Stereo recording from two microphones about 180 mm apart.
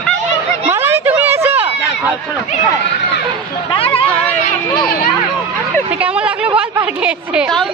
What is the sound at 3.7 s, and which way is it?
Speech, 30° left (ahead or behind).